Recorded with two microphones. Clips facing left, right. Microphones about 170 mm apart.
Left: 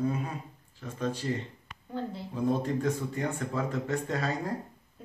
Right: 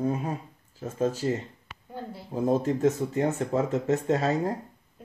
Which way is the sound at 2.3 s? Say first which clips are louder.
Right 4 dB; 40° right (ahead or behind).